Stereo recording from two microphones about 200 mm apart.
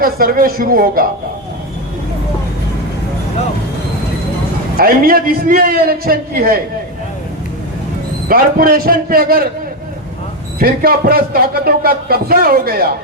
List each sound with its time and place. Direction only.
0.0 s speech: 45° right (ahead or behind)
4.8 s speech: 45° right (ahead or behind)
8.3 s speech: 45° right (ahead or behind)
10.6 s speech: 50° right (ahead or behind)